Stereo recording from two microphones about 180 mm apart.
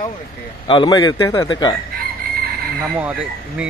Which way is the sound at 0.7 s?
25° left (ahead or behind).